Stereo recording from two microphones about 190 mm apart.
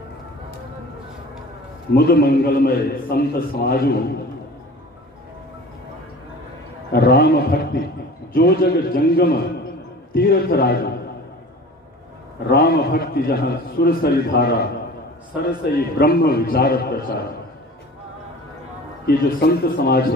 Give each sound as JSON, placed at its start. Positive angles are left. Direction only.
{"t": 2.0, "sound": "a man's voice", "side_deg": 55}
{"t": 6.9, "sound": "a man's voice", "side_deg": 55}
{"t": 12.4, "sound": "a man's voice", "side_deg": 55}
{"t": 19.0, "sound": "a man's voice", "side_deg": 55}